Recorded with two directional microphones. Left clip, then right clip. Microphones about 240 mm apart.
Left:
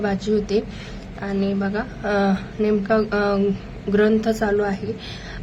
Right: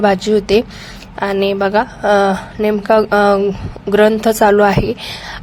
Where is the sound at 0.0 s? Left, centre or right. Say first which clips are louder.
Right 10 dB; right.